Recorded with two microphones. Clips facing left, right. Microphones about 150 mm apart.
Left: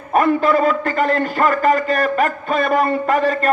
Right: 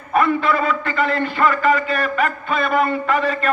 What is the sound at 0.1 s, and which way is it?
A man's voice, 45° left (ahead or behind).